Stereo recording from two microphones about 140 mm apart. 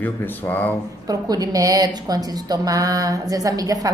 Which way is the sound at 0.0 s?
10° left (ahead or behind).